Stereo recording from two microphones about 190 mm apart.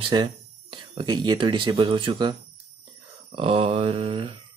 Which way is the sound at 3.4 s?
30° right (ahead or behind).